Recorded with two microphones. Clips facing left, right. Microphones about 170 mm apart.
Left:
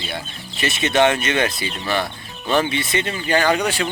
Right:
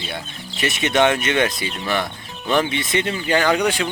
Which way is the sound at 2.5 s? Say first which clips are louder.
Even; 20° right (ahead or behind).